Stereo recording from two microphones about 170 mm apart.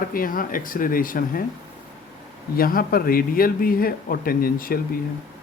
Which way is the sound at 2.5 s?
60° left (ahead or behind).